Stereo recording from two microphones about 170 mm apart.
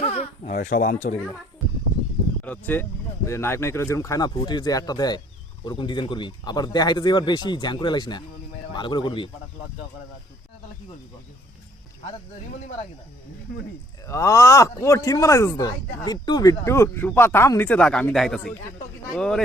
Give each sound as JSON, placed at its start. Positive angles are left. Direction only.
{"t": 0.0, "sound": "a sound", "side_deg": 35}
{"t": 0.5, "sound": "speech", "side_deg": 55}
{"t": 2.4, "sound": "speech", "side_deg": 10}
{"t": 14.1, "sound": "speech", "side_deg": 20}